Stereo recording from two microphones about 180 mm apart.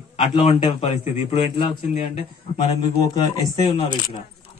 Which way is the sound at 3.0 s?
25° left (ahead or behind).